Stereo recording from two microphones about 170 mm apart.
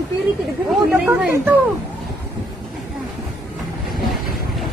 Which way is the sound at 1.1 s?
10° right (ahead or behind).